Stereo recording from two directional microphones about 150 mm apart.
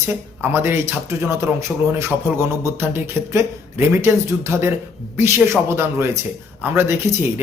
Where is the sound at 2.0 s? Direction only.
15° right (ahead or behind).